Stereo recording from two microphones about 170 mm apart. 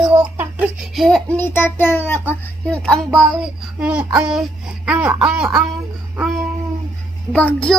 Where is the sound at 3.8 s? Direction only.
5° right (ahead or behind).